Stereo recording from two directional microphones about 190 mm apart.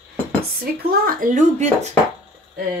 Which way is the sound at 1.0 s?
45° right (ahead or behind).